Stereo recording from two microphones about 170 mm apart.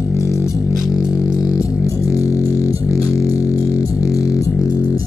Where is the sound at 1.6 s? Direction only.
20° left (ahead or behind).